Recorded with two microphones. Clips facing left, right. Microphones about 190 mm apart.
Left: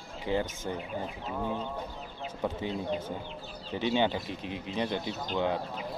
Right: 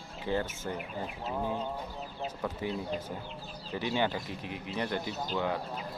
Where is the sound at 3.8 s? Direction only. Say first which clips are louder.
Left 3 dB; 20° left (ahead or behind).